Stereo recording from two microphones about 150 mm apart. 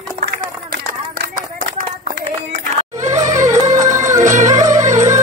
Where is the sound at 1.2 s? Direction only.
70° right (ahead or behind).